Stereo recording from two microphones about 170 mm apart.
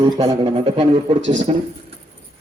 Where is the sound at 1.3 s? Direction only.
45° right (ahead or behind).